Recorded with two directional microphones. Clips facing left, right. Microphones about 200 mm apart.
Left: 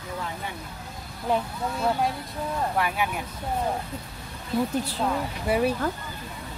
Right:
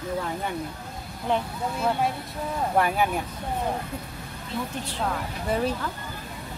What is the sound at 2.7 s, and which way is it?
Speech, 40° right (ahead or behind).